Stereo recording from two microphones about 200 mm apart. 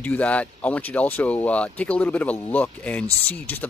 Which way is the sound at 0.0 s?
5° left (ahead or behind).